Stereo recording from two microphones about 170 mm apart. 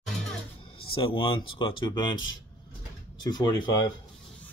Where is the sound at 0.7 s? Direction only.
30° left (ahead or behind).